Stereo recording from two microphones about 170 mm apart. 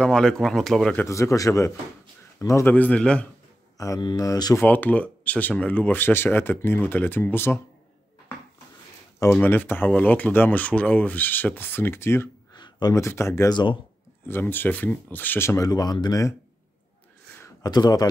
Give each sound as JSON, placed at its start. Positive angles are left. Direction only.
{"t": 0.0, "sound": "speech", "side_deg": 5}
{"t": 1.0, "sound": "speech", "side_deg": 15}
{"t": 3.7, "sound": "speech", "side_deg": 20}
{"t": 4.6, "sound": "speech", "side_deg": 10}
{"t": 9.2, "sound": "speech", "side_deg": 10}
{"t": 12.5, "sound": "speech", "side_deg": 25}
{"t": 14.2, "sound": "speech", "side_deg": 10}
{"t": 17.4, "sound": "a sound", "side_deg": 25}